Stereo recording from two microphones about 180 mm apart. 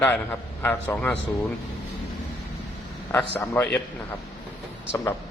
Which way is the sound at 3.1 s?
10° left (ahead or behind).